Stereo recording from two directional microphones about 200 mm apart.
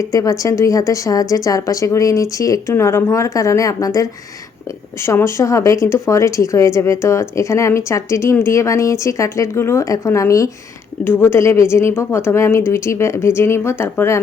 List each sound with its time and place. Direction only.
0.0 s a woman's voice: 15° left (ahead or behind)